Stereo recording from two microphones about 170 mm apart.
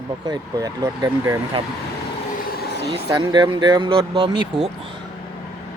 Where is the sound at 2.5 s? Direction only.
70° left (ahead or behind).